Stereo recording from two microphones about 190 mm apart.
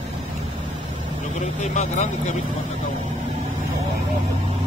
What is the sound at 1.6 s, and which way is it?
Speech, 35° left (ahead or behind).